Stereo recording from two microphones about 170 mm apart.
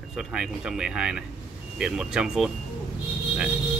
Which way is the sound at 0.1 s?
5° right (ahead or behind).